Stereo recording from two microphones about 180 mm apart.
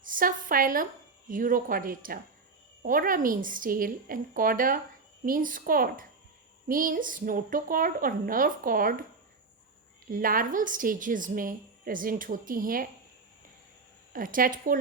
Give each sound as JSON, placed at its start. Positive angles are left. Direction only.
{"t": 0.0, "sound": "a woman's voice", "side_deg": -50}
{"t": 10.1, "sound": "a woman's voice", "side_deg": -50}
{"t": 14.1, "sound": "a woman's voice", "side_deg": -50}